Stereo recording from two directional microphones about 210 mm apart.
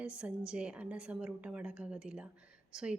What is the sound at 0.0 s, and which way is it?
A woman's voice, 5° right (ahead or behind).